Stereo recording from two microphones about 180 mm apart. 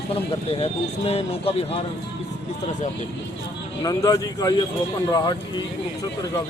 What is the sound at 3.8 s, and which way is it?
Speech, 20° left (ahead or behind).